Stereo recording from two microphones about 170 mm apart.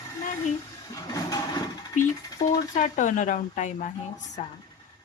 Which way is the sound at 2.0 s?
50° left (ahead or behind).